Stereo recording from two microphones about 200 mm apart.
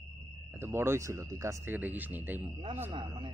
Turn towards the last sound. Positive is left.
turn(degrees=-25)  # may be behind; listen again after turning